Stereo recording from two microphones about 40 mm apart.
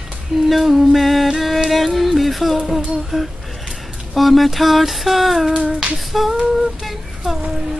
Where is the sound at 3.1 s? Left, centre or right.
Centre.